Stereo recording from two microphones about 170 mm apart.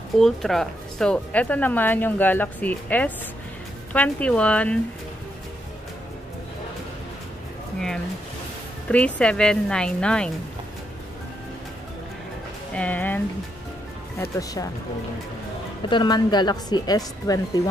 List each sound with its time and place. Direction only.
0.2 s speech: centre (ahead or behind)
8.8 s speech: 5° left (ahead or behind)
12.7 s speech: 10° left (ahead or behind)
14.2 s a woman's voice: 20° left (ahead or behind)
15.9 s a woman's voice: 25° left (ahead or behind)